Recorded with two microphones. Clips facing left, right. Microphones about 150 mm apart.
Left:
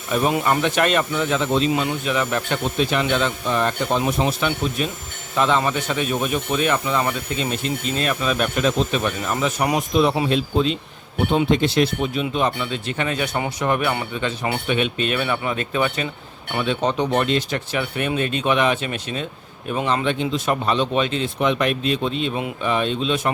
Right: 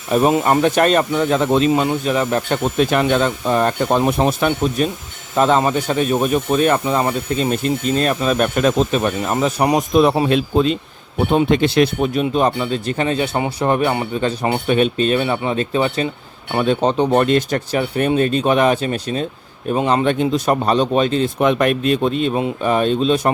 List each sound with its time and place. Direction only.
0.1 s speech: 30° right (ahead or behind); by 1.7 s 50° right (ahead or behind)
1.7 s speech: 40° right (ahead or behind)
9.9 s speech: 50° right (ahead or behind); by 17.2 s 35° right (ahead or behind)
17.2 s speech: 45° right (ahead or behind)